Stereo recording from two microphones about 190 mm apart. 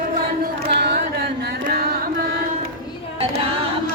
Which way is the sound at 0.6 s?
60° right (ahead or behind).